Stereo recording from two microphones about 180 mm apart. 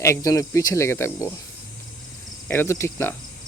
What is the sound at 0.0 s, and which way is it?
Speech, 15° left (ahead or behind).